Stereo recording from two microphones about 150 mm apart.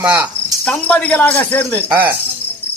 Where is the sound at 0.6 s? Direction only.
5° left (ahead or behind).